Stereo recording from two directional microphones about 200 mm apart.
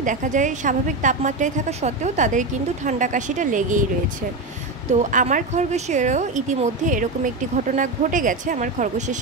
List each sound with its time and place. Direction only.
0.0 s a woman's voice: 40° right (ahead or behind)
5.1 s a woman's voice: 40° right (ahead or behind)